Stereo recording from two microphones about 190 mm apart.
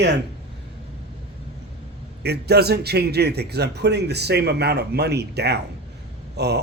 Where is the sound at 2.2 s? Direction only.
60° right (ahead or behind).